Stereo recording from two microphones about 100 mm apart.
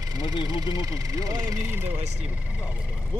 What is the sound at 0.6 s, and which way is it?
Speech, 35° right (ahead or behind).